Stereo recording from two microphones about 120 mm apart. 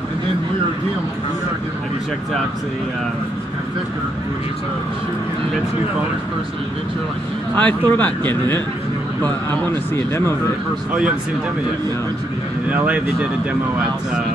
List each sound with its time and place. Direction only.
7.5 s speech: 10° left (ahead or behind)
9.7 s speech: 25° left (ahead or behind)
10.9 s speech: 10° right (ahead or behind)
12.6 s speech: 10° right (ahead or behind)